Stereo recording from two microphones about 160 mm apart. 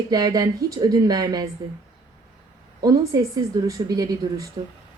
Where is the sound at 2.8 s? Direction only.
20° right (ahead or behind).